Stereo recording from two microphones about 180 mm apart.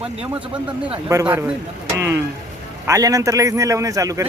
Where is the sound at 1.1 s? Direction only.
10° right (ahead or behind).